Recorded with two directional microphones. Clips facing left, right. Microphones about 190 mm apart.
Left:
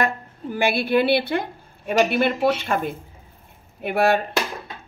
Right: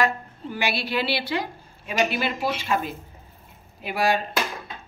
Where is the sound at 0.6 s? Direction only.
50° left (ahead or behind).